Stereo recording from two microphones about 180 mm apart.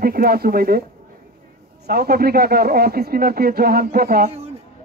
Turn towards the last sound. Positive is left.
turn(degrees=-55)  # may be behind; listen again after turning